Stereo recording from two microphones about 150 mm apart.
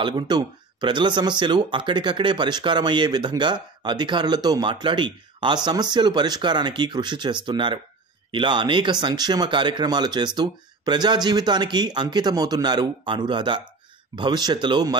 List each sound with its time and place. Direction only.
0.1 s speech: 30° right (ahead or behind)